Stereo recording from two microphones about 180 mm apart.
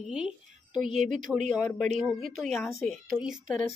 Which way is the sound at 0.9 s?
45° right (ahead or behind).